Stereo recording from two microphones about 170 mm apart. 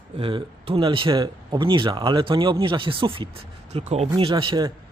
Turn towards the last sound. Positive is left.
turn(degrees=-25)  # may be behind; listen again after turning